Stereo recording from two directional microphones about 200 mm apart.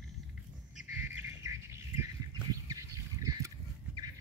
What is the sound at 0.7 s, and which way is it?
Squawk, 10° right (ahead or behind).